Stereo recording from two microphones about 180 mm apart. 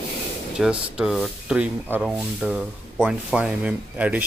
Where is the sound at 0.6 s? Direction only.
5° right (ahead or behind).